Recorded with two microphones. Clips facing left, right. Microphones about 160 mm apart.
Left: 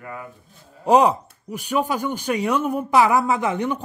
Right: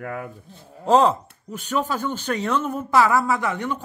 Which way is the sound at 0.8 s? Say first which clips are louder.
Left 1 dB; 15° left (ahead or behind).